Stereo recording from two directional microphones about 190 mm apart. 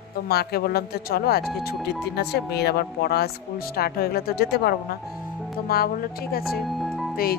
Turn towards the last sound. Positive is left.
turn(degrees=0)  # may be behind; listen again after turning